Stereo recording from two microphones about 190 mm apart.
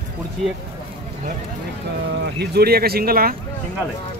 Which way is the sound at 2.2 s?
60° right (ahead or behind).